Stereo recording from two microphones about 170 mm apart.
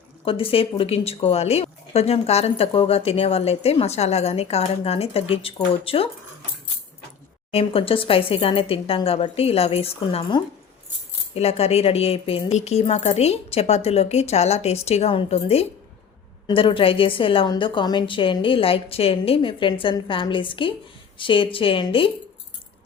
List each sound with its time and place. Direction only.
0.3 s speech: 30° left (ahead or behind)
7.5 s speech: 35° left (ahead or behind)